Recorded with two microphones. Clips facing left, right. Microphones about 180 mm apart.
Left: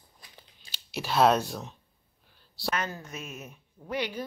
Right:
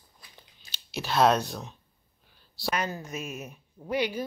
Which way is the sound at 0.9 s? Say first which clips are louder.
Even; 5° left (ahead or behind).